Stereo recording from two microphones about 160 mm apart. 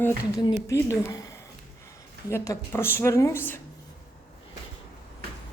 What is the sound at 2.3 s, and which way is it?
A woman's voice, 15° left (ahead or behind).